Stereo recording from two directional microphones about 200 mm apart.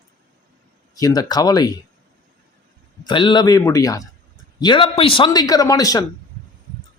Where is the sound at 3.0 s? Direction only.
25° left (ahead or behind).